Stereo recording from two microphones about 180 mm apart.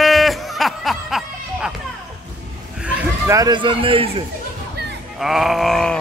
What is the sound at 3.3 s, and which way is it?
Speech, 25° right (ahead or behind).